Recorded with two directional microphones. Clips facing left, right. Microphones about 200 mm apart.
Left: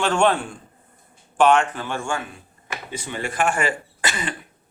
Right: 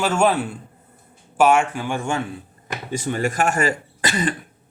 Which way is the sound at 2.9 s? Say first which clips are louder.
Right 7 dB; 45° right (ahead or behind).